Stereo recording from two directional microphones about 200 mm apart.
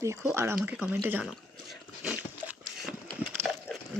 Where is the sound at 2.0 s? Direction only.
5° right (ahead or behind).